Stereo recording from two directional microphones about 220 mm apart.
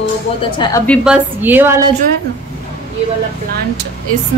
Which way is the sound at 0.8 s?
Centre (ahead or behind).